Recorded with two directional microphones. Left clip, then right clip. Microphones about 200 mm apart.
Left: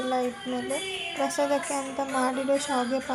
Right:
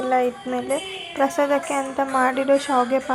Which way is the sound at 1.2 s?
20° right (ahead or behind).